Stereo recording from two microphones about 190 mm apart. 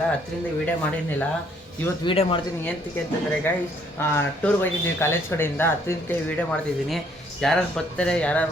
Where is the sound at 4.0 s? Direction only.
10° left (ahead or behind).